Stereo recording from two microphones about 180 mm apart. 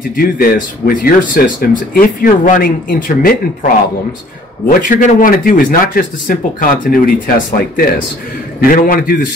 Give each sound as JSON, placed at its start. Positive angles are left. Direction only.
{"t": 0.1, "sound": "speech", "side_deg": 55}
{"t": 4.6, "sound": "speech", "side_deg": 50}